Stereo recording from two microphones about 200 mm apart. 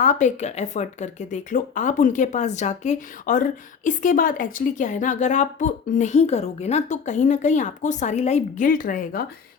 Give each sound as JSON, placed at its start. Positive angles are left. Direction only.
{"t": 0.0, "sound": "a woman's voice", "side_deg": 40}